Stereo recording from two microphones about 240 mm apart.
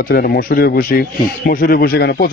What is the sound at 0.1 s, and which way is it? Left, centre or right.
Speech, left.